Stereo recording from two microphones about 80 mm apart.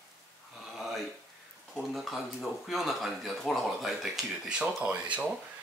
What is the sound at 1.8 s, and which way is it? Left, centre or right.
Speech, centre.